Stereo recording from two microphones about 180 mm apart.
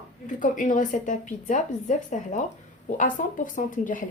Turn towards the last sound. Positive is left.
turn(degrees=45)  # may be behind; listen again after turning